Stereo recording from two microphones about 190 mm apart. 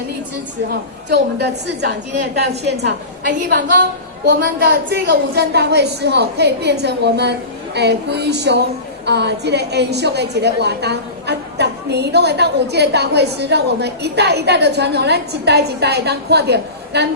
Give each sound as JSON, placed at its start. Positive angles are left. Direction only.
{"t": 0.7, "sound": "a woman's voice", "side_deg": -60}